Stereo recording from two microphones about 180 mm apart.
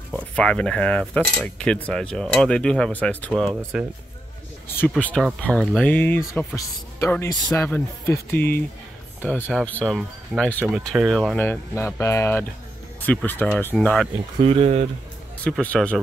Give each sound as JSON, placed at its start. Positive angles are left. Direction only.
{"t": 0.1, "sound": "speech", "side_deg": 5}
{"t": 14.4, "sound": "speech", "side_deg": -35}
{"t": 15.4, "sound": "speech", "side_deg": 10}